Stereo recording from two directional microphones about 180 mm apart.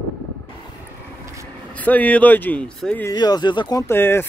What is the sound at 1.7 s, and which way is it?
Speech, 10° left (ahead or behind).